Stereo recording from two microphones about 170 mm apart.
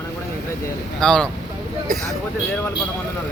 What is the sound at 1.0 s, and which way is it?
Speech, 5° left (ahead or behind).